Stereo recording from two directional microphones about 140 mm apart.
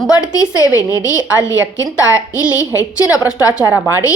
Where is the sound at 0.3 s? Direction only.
25° left (ahead or behind).